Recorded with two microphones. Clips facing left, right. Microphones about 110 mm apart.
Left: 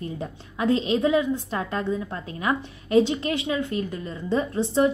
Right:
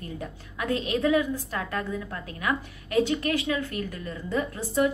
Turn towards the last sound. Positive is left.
turn(degrees=25)  # may be behind; listen again after turning